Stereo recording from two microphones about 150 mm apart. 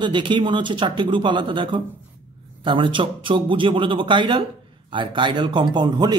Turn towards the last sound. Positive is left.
turn(degrees=-30)  # may be behind; listen again after turning